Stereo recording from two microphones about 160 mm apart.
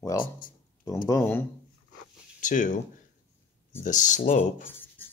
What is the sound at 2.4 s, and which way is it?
Speech, 50° left (ahead or behind).